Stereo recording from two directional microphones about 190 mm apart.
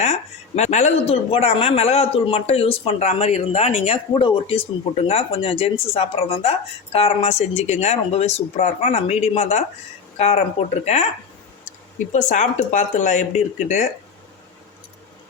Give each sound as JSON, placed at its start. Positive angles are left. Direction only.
{"t": 0.0, "sound": "speech", "side_deg": 35}
{"t": 12.1, "sound": "speech", "side_deg": 40}